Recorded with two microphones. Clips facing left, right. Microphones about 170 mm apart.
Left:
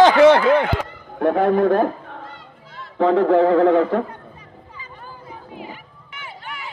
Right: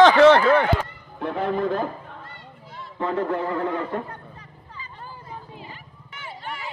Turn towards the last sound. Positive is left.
turn(degrees=-35)  # may be behind; listen again after turning